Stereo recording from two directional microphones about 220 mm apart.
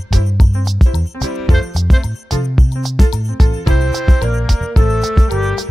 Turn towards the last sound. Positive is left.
turn(degrees=0)  # may be behind; listen again after turning